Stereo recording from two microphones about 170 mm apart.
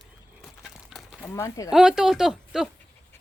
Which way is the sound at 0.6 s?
Centre (ahead or behind).